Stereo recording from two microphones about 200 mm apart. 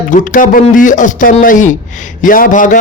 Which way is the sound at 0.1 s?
40° left (ahead or behind).